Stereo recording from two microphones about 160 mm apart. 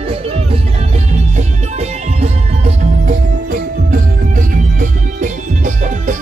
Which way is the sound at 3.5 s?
60° right (ahead or behind).